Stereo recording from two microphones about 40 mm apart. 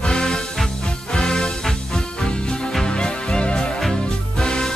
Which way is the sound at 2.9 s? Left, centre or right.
Left.